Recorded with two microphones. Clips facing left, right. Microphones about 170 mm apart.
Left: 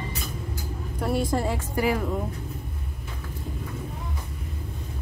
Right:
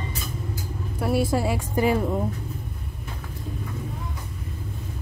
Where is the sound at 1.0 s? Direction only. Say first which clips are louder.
Right 2 dB; 5° right (ahead or behind).